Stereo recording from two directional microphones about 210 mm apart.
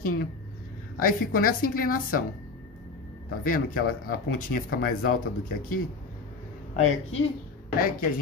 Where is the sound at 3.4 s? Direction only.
40° left (ahead or behind).